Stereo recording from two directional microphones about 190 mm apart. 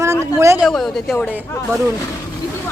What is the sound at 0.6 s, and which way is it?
Speech, centre (ahead or behind).